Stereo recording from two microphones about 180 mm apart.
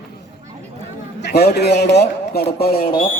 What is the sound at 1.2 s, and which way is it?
Speech, 65° left (ahead or behind).